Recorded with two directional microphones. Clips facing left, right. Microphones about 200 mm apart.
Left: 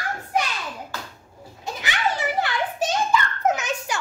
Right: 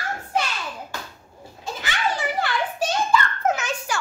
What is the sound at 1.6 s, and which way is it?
Children playing, 20° left (ahead or behind).